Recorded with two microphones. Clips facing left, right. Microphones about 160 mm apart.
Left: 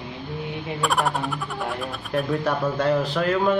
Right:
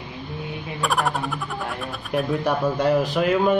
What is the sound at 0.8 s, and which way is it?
Speech, centre (ahead or behind).